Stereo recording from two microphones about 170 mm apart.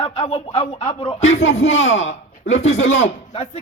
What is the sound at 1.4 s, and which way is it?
Speech, 90° left.